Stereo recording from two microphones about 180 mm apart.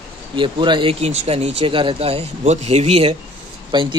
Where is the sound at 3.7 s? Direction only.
25° right (ahead or behind).